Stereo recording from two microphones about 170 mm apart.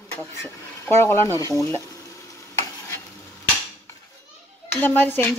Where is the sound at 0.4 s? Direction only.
15° left (ahead or behind).